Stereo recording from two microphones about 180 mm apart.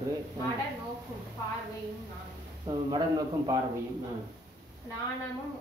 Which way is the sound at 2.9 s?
20° right (ahead or behind).